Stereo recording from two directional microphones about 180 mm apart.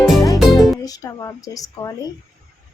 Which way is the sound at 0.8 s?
20° left (ahead or behind).